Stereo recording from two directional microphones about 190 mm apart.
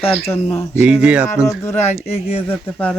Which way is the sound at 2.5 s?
10° left (ahead or behind).